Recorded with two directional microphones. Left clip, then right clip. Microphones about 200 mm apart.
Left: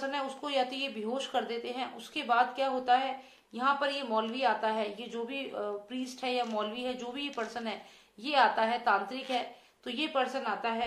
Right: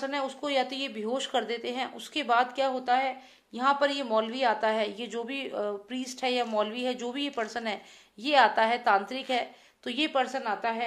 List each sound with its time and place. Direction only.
0.0 s a woman's voice: 40° right (ahead or behind)